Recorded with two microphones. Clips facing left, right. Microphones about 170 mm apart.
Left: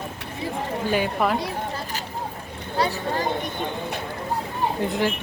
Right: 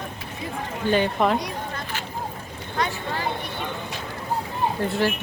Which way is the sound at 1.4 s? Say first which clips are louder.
Left 2 dB; 30° left (ahead or behind).